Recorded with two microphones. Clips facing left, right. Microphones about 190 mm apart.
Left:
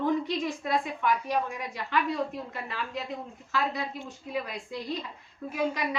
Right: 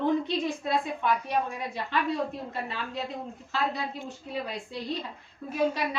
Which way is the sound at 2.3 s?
30° right (ahead or behind).